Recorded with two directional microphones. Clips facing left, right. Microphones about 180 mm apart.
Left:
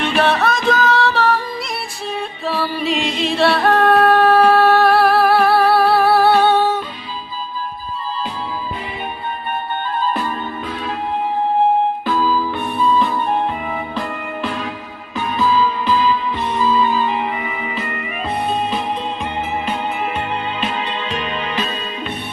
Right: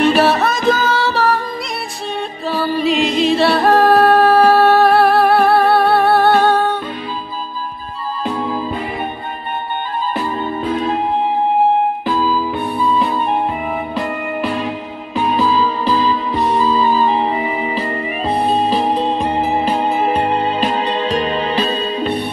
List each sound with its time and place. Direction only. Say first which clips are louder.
0.2 s music: right 2 dB; 5° right (ahead or behind)
2.4 s music: right 4 dB; centre (ahead or behind)
8.2 s music: right 5 dB; 55° right (ahead or behind)
10.6 s music: right 7 dB; 30° right (ahead or behind)
12.1 s music: right 1 dB; 15° right (ahead or behind)
15.1 s music: right 2 dB; 35° right (ahead or behind)